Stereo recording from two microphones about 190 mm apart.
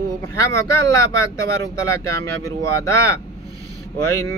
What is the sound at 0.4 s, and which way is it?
Music, 15° left (ahead or behind).